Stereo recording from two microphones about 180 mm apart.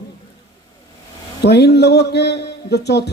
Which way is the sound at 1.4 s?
70° left (ahead or behind).